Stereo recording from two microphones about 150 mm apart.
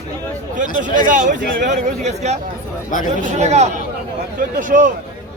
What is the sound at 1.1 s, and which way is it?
Speech, 60° right (ahead or behind).